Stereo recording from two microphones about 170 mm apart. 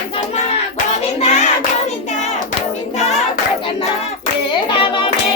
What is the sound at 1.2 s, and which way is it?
Hands, 45° left (ahead or behind).